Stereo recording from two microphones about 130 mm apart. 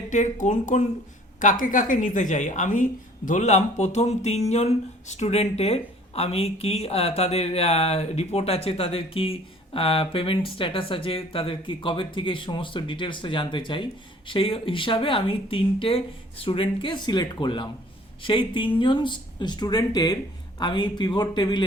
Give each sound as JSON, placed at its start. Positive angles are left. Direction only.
{"t": 0.1, "sound": "speech", "side_deg": 70}
{"t": 1.4, "sound": "a woman's voice", "side_deg": 85}